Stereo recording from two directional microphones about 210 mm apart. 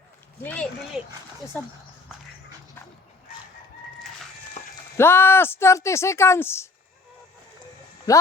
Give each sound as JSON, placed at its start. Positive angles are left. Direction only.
{"t": 0.4, "sound": "speech", "side_deg": 5}
{"t": 4.9, "sound": "speech", "side_deg": 10}
{"t": 8.1, "sound": "speech", "side_deg": 15}